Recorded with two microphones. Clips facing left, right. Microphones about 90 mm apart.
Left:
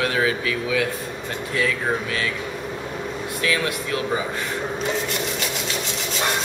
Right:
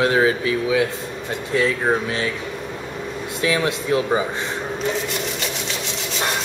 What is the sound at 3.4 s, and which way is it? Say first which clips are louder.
Speech: right 3 dB; 25° right (ahead or behind).